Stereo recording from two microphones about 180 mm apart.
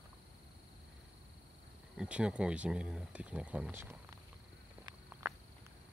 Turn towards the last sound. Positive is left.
turn(degrees=-15)  # may be behind; listen again after turning